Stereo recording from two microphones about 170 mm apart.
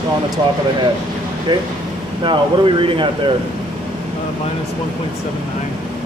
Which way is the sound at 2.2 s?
30° right (ahead or behind).